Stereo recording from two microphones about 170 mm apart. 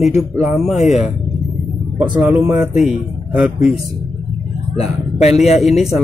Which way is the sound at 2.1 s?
10° right (ahead or behind).